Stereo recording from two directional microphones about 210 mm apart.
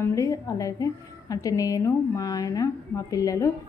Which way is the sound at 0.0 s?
15° left (ahead or behind).